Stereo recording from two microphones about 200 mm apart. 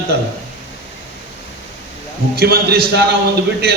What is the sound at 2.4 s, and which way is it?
Speech, 50° right (ahead or behind).